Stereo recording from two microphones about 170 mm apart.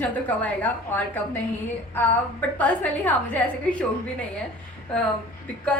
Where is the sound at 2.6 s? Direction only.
10° left (ahead or behind).